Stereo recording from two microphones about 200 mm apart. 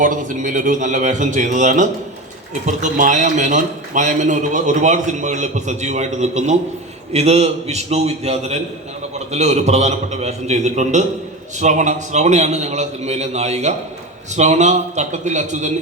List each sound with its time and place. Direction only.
0.0 s a man's voice: 40° right (ahead or behind)